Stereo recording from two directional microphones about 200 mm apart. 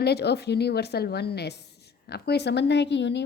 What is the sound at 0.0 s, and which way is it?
A woman's voice, 55° left (ahead or behind).